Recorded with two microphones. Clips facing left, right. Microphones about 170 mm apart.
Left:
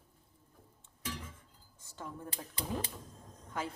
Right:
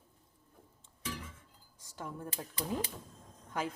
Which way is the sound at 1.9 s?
10° right (ahead or behind).